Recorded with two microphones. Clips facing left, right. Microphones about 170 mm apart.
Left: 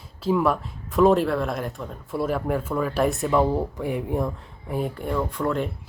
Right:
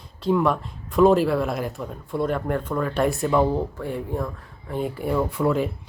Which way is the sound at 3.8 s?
15° left (ahead or behind).